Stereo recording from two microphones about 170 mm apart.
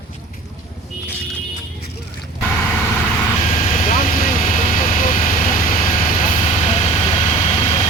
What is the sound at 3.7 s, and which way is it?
Vehicle, 45° left (ahead or behind).